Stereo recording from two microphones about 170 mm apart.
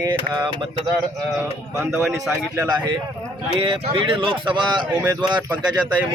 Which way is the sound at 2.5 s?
25° right (ahead or behind).